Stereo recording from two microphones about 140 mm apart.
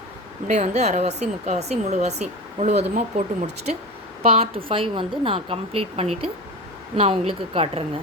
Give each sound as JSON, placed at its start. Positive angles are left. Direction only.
{"t": 0.4, "sound": "speech", "side_deg": -60}
{"t": 4.2, "sound": "speech", "side_deg": -45}